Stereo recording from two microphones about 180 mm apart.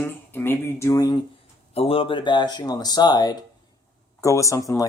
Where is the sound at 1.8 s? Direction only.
30° left (ahead or behind).